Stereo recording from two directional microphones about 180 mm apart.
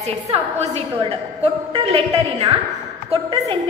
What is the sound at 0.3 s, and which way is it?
A woman's voice, 35° right (ahead or behind).